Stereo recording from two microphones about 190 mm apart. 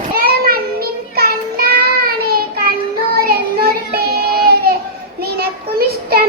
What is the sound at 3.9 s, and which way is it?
Child singing, 55° right (ahead or behind).